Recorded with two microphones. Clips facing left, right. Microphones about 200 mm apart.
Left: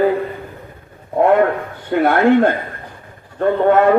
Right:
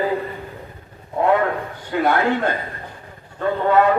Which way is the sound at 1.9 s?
50° left (ahead or behind).